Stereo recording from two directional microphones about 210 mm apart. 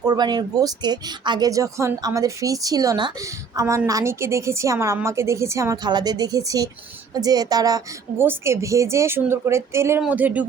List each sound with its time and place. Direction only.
0.0 s a woman's voice: 20° right (ahead or behind)